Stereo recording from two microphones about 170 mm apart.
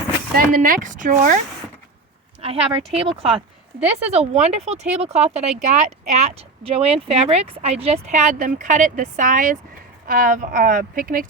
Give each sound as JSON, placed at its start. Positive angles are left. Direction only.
{"t": 0.3, "sound": "speech", "side_deg": -55}
{"t": 2.4, "sound": "speech", "side_deg": -35}